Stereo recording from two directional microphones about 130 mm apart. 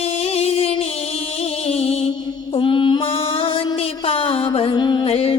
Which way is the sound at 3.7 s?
45° left (ahead or behind).